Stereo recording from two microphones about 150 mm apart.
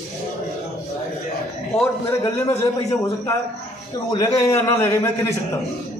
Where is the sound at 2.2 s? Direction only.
20° left (ahead or behind).